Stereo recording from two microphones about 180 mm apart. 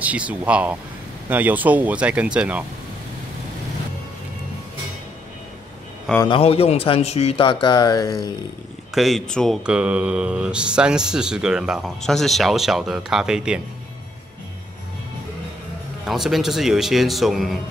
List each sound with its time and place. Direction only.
0.0 s speech: 10° right (ahead or behind)
6.2 s speech: 30° left (ahead or behind)
8.9 s speech: centre (ahead or behind)
16.1 s speech: centre (ahead or behind)